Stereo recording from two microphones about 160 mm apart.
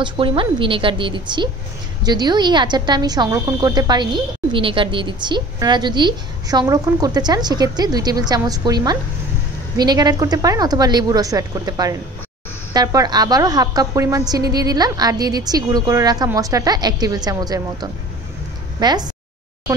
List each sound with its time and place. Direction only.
0.0 s a woman's voice: 30° right (ahead or behind)